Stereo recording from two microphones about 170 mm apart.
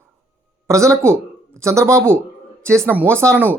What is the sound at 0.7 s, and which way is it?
Speech, 15° right (ahead or behind).